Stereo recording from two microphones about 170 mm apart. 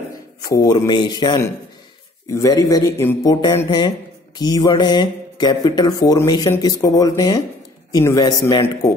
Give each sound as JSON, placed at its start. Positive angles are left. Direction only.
{"t": 0.5, "sound": "speech", "side_deg": 25}